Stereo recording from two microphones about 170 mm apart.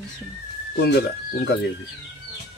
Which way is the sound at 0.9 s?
70° left (ahead or behind).